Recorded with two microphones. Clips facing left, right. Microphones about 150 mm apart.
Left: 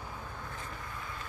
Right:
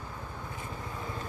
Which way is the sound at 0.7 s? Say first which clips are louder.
Right 5 dB; 25° right (ahead or behind).